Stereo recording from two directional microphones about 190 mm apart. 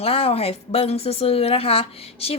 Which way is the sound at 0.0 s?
30° left (ahead or behind).